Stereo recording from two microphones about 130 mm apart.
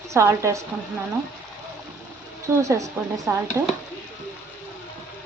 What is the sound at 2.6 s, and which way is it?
Speech, 25° right (ahead or behind).